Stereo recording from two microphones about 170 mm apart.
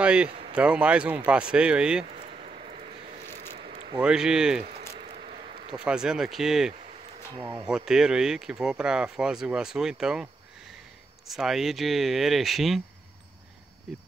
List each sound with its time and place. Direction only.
0.0 s a man's voice: 5° right (ahead or behind)
2.0 s a sound: 40° right (ahead or behind)
3.3 s zipper: 40° right (ahead or behind)
4.0 s speech: 5° right (ahead or behind)
4.6 s a sound: 45° right (ahead or behind)
5.9 s speech: 5° right (ahead or behind)
7.3 s speech: 25° right (ahead or behind)
7.6 s speech: 5° right (ahead or behind)
13.9 s speech: 5° right (ahead or behind)